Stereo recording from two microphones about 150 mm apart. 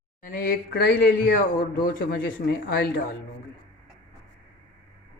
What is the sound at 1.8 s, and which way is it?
Speech, 75° left (ahead or behind).